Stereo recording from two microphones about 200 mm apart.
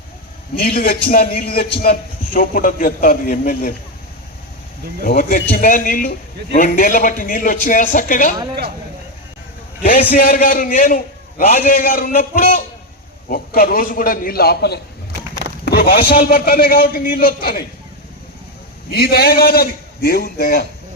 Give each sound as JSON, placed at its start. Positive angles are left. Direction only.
{"t": 0.5, "sound": "a man's voice", "side_deg": 50}
{"t": 5.0, "sound": "a man's voice", "side_deg": 50}
{"t": 9.8, "sound": "a man's voice", "side_deg": 45}
{"t": 18.9, "sound": "a man's voice", "side_deg": 50}